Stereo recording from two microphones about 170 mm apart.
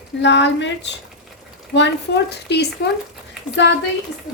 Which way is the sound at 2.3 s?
80° left.